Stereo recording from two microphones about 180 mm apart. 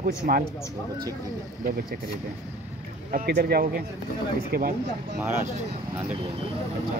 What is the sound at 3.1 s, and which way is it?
Speech, 60° right (ahead or behind).